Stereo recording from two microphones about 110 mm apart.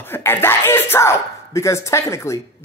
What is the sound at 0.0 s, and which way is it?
Speech, 20° left (ahead or behind).